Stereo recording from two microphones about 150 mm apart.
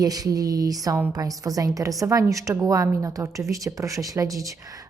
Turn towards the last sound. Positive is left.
turn(degrees=-20)  # may be behind; listen again after turning